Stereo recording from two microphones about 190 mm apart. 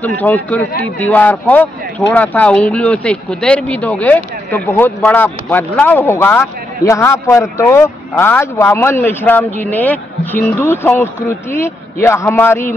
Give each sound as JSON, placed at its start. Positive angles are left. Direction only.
{"t": 0.0, "sound": "a man's voice", "side_deg": 10}